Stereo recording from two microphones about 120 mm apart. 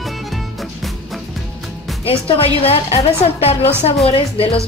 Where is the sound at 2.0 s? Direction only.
50° left (ahead or behind).